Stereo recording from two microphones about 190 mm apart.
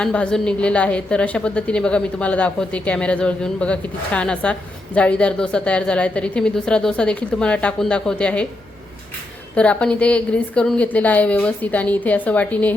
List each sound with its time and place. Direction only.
0.0 s a woman's voice: 5° left (ahead or behind)
9.6 s a woman's voice: 5° left (ahead or behind)